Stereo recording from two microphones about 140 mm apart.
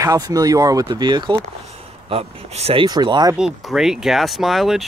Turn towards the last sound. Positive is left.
turn(degrees=0)  # may be behind; listen again after turning